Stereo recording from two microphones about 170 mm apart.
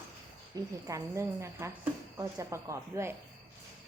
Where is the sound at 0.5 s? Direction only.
20° right (ahead or behind).